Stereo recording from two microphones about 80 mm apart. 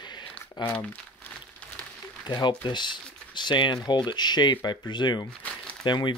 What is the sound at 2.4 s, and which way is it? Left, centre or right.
Speech, left.